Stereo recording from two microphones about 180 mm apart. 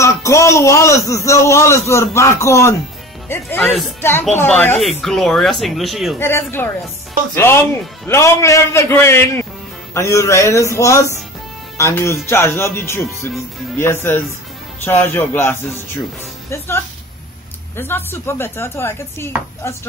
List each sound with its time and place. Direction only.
0.0 s a man's voice: 15° left (ahead or behind); by 6.1 s centre (ahead or behind)
6.1 s a man's voice: 15° left (ahead or behind)
14.9 s a man's voice: 10° left (ahead or behind)